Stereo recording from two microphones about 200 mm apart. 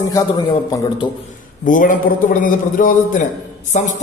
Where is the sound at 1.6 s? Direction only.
40° left (ahead or behind).